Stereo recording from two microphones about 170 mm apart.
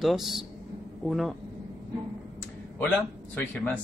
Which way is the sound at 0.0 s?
Centre (ahead or behind).